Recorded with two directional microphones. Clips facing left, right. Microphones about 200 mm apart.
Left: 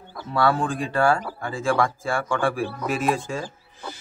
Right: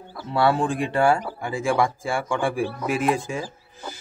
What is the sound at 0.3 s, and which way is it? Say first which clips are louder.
Speech: right 1 dB; 25° right (ahead or behind).